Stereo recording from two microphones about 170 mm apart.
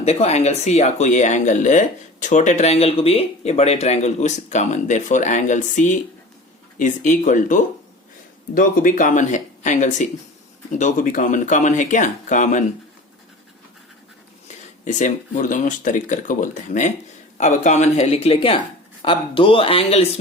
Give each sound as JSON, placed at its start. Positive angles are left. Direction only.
{"t": 0.0, "sound": "speech", "side_deg": 40}
{"t": 14.4, "sound": "speech", "side_deg": 45}